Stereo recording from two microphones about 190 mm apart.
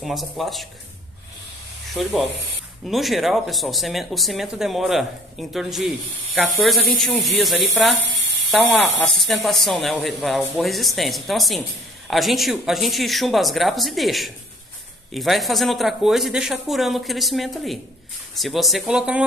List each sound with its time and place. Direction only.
0.0 s speech: centre (ahead or behind)
2.0 s speech: centre (ahead or behind)
8.1 s a sound: 65° right (ahead or behind)
8.5 s speech: centre (ahead or behind)